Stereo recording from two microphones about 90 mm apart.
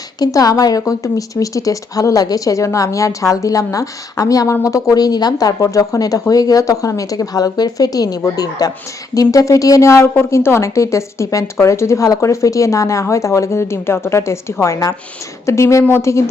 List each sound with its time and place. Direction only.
0.2 s speech: 45° left (ahead or behind)